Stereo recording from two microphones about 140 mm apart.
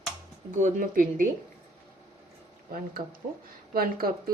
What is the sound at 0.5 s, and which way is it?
Speech, 70° right (ahead or behind).